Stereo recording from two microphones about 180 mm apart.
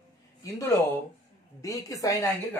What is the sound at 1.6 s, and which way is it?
A woman's voice, 20° left (ahead or behind).